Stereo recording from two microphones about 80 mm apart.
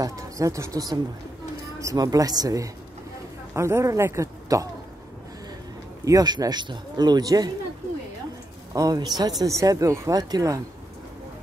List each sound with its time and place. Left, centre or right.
0.0 s speech: right
3.5 s speech: right
6.0 s a man's voice: right
8.7 s speech: right
9.4 s speech: right